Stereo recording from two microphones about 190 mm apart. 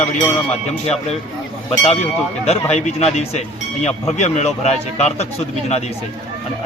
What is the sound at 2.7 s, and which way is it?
Speech, 35° left (ahead or behind).